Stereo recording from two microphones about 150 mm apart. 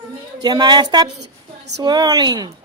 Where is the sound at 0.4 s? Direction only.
30° right (ahead or behind).